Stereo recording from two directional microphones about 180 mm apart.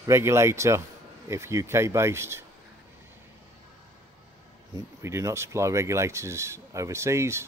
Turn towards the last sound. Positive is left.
turn(degrees=-15)  # may be behind; listen again after turning